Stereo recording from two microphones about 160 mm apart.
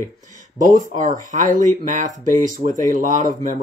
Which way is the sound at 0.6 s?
55° right (ahead or behind).